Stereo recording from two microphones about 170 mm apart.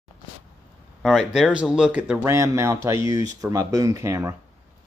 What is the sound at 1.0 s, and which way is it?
Speech, centre (ahead or behind).